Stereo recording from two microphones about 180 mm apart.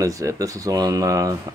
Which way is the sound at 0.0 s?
20° right (ahead or behind).